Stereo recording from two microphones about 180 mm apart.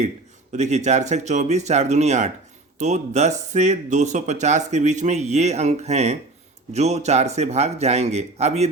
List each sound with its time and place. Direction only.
0.5 s speech: 40° right (ahead or behind)